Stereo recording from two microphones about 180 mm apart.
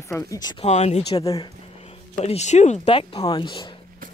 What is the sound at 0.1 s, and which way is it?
Speech, 20° left (ahead or behind).